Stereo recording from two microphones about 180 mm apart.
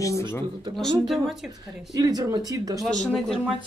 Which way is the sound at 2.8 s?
5° left (ahead or behind).